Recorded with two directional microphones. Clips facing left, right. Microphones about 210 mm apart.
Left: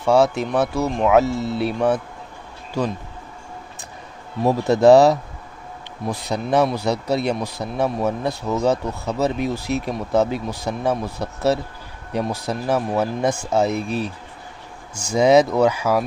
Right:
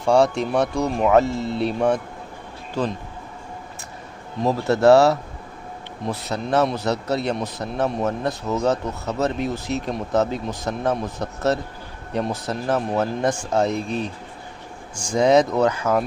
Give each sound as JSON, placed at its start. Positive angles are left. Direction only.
{"t": 0.0, "sound": "speech", "side_deg": 5}
{"t": 4.4, "sound": "speech", "side_deg": 15}